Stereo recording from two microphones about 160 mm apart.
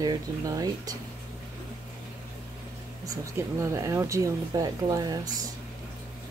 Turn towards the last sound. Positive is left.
turn(degrees=-25)  # may be behind; listen again after turning